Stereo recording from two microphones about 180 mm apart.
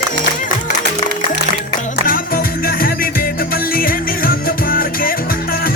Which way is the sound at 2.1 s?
55° left (ahead or behind).